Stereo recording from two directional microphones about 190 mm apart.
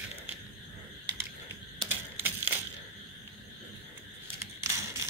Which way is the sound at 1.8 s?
25° right (ahead or behind).